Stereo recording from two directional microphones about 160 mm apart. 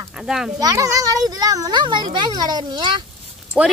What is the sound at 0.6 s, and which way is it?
A child's voice, 20° right (ahead or behind).